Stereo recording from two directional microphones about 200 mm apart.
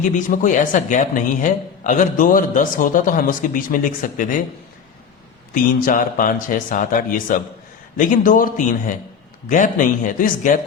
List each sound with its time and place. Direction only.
0.0 s a man's voice: 40° left (ahead or behind)
5.8 s a man's voice: 40° left (ahead or behind)